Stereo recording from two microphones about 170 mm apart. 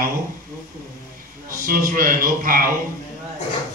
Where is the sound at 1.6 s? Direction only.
55° right (ahead or behind).